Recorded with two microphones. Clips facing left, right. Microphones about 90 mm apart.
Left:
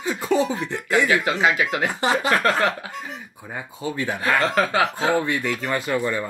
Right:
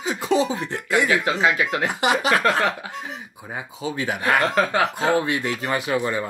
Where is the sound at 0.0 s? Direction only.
15° right (ahead or behind).